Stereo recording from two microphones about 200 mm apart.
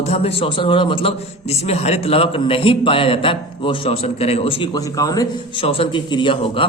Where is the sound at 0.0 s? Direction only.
30° left (ahead or behind).